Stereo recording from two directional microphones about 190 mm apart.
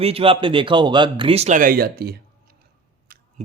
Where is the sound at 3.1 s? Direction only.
50° right (ahead or behind).